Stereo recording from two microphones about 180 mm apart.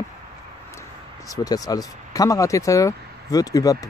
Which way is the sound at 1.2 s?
20° left (ahead or behind).